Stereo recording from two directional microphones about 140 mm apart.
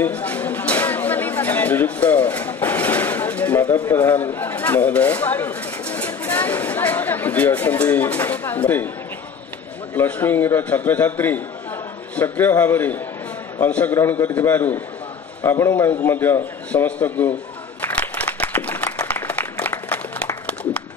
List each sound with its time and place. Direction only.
0.0 s speech: 10° left (ahead or behind)
9.9 s a man's voice: 10° left (ahead or behind)
17.8 s applause: 10° left (ahead or behind)